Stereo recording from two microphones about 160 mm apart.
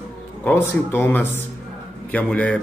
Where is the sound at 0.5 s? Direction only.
10° left (ahead or behind).